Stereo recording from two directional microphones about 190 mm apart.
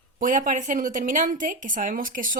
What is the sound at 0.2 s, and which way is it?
A woman's voice, 45° right (ahead or behind).